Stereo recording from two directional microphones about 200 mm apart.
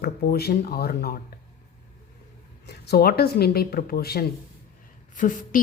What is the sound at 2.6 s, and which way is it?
Speech, 50° left (ahead or behind).